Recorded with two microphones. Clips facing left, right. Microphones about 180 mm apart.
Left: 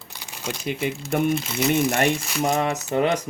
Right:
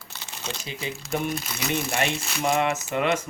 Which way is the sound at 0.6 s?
60° left (ahead or behind).